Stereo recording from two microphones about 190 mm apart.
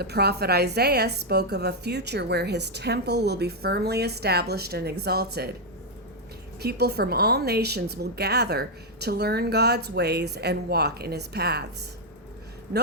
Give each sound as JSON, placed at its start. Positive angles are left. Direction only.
{"t": 0.0, "sound": "a woman's voice", "side_deg": -60}
{"t": 6.6, "sound": "a woman's voice", "side_deg": -60}